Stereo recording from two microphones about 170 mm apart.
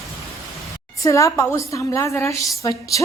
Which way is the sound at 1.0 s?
20° left (ahead or behind).